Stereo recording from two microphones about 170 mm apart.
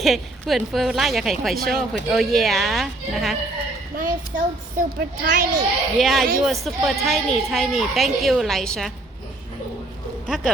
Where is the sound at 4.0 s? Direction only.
55° right (ahead or behind).